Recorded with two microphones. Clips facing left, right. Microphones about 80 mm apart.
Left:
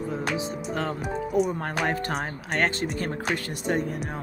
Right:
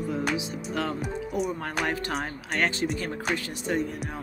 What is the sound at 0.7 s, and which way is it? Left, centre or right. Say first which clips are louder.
Speech: even; left.